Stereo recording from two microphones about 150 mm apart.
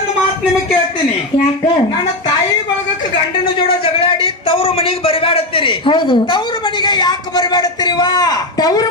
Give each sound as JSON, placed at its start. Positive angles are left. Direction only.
{"t": 4.0, "sound": "a man's voice", "side_deg": 40}